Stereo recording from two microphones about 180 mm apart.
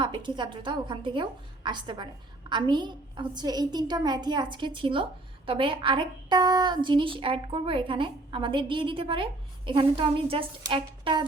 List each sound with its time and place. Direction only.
0.0 s a woman's voice: 25° right (ahead or behind)